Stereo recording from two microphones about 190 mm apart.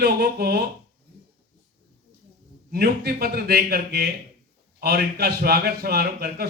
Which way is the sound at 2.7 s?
55° right (ahead or behind).